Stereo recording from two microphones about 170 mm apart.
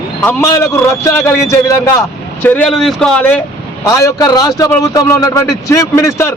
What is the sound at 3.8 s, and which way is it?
A man's voice, 20° left (ahead or behind).